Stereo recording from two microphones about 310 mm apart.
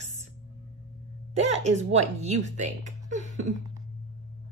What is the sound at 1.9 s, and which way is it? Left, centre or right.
A woman's voice, right.